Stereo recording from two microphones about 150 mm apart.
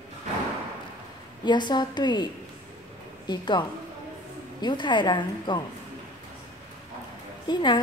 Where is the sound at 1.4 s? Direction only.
30° left (ahead or behind).